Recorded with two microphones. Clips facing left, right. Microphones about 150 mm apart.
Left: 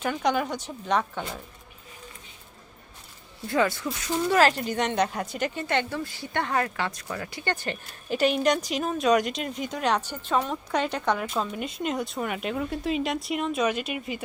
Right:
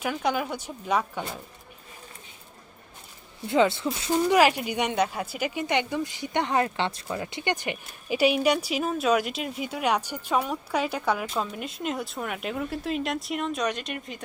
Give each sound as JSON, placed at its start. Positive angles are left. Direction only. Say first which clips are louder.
{"t": 0.0, "sound": "a woman's voice", "louder": "left 2 dB", "side_deg": -5}
{"t": 3.4, "sound": "speech", "louder": "right 3 dB", "side_deg": -20}
{"t": 4.3, "sound": "speech", "louder": "even", "side_deg": -10}